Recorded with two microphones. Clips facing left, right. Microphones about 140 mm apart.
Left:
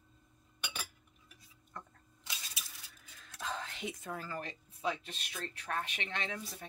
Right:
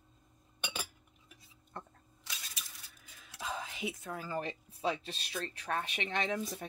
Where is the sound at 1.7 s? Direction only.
30° right (ahead or behind).